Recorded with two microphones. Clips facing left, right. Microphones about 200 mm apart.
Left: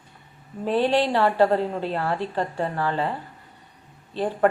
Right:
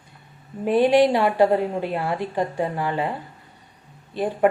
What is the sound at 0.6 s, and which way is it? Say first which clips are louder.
A woman's voice: right 5 dB; 15° right (ahead or behind).